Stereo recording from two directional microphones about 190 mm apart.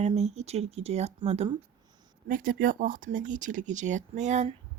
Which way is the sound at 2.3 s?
45° right (ahead or behind).